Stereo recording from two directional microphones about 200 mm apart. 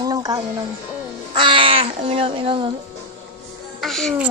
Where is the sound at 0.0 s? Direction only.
20° right (ahead or behind).